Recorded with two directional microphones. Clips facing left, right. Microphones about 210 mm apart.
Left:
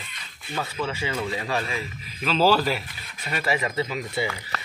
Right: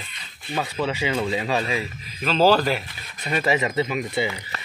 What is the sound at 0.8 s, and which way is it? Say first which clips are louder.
Speech: right 4 dB; 15° right (ahead or behind).